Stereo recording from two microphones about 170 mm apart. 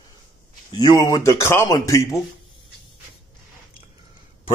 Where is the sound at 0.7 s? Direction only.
25° left (ahead or behind).